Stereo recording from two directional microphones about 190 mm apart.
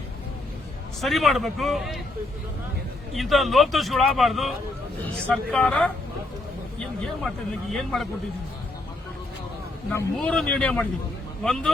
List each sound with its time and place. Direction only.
1.0 s a man's voice: centre (ahead or behind)
3.1 s a man's voice: centre (ahead or behind)
9.9 s a man's voice: 5° left (ahead or behind)